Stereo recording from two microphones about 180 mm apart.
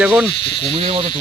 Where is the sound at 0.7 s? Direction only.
30° right (ahead or behind).